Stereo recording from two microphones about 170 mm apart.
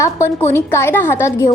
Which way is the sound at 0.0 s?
15° left (ahead or behind).